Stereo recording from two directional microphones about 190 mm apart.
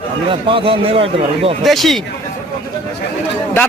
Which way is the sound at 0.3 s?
25° right (ahead or behind).